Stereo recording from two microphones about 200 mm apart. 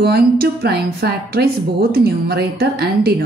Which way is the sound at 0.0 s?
55° right (ahead or behind).